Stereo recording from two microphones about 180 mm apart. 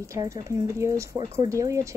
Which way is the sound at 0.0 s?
15° right (ahead or behind).